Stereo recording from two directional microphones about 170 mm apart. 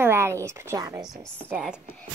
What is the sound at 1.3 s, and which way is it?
Speech, 5° right (ahead or behind).